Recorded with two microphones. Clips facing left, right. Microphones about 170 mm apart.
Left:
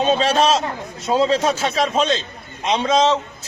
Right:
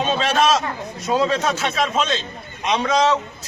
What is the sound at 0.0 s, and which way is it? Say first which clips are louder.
A man's voice: left 2 dB; 35° left (ahead or behind).